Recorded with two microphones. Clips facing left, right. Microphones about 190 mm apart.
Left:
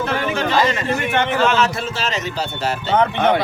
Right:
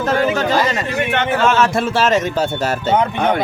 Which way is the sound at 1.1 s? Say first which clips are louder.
Right 2 dB; 50° right (ahead or behind).